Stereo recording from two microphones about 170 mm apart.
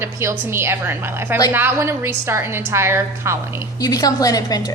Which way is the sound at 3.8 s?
20° left (ahead or behind).